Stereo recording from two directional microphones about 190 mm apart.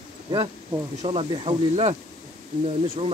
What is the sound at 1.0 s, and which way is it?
Speech, 25° right (ahead or behind).